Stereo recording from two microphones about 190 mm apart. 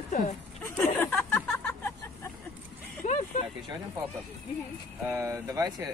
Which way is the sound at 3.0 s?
40° left (ahead or behind).